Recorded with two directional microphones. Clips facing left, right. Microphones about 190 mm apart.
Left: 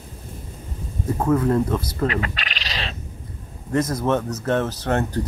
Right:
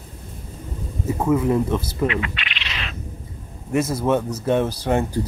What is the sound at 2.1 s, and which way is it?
Bird, 40° left (ahead or behind).